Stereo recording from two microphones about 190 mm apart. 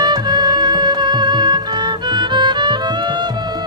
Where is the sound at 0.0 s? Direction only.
20° right (ahead or behind).